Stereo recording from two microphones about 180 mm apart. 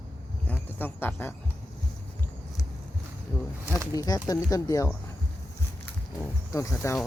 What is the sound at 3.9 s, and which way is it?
Speech, 20° left (ahead or behind).